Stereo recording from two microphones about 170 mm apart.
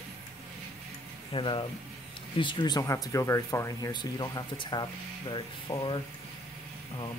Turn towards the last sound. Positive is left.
turn(degrees=30)  # may be behind; listen again after turning